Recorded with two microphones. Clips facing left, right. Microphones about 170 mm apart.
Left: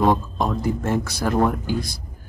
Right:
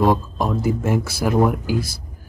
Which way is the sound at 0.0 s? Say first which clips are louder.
Right 1 dB; 5° right (ahead or behind).